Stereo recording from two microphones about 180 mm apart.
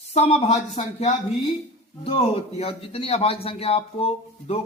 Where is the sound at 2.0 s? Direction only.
35° left (ahead or behind).